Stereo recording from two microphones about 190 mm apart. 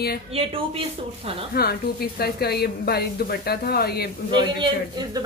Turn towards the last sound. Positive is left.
turn(degrees=-25)  # may be behind; listen again after turning